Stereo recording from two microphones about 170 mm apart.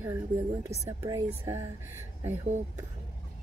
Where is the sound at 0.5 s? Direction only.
20° right (ahead or behind).